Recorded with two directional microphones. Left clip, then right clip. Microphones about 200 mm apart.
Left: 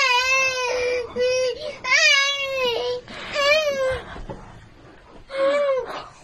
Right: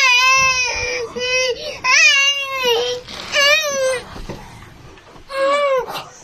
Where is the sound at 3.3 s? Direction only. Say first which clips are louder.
Right 5 dB; 15° right (ahead or behind).